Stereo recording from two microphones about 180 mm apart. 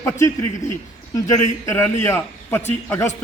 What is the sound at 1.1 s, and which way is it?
A man's voice, 15° left (ahead or behind).